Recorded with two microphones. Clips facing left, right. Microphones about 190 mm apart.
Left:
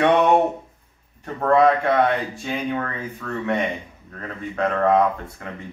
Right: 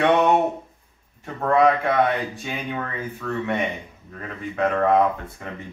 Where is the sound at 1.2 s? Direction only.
Centre (ahead or behind).